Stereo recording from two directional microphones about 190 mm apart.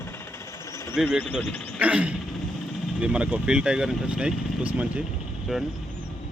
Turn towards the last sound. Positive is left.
turn(degrees=0)  # may be behind; listen again after turning